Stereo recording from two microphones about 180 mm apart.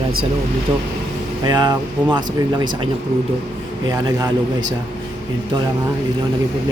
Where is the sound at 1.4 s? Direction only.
20° right (ahead or behind).